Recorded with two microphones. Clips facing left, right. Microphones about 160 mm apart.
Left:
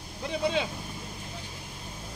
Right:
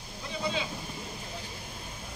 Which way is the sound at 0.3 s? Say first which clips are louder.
Left 5 dB; 65° left (ahead or behind).